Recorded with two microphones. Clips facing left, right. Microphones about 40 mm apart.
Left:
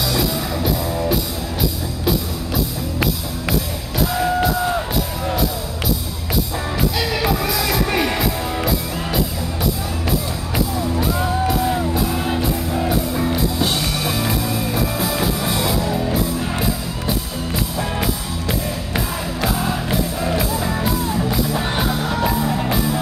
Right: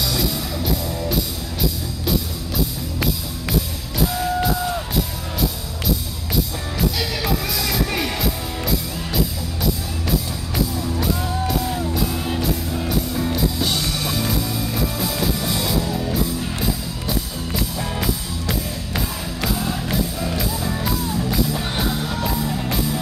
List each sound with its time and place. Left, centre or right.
0.0 s music: centre
4.1 s music: left
6.8 s music: centre
10.8 s music: centre
17.7 s music: centre